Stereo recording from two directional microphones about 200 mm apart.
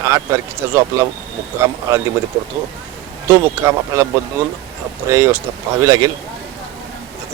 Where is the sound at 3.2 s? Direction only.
15° right (ahead or behind).